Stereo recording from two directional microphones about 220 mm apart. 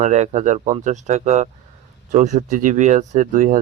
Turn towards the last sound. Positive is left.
turn(degrees=-35)  # may be behind; listen again after turning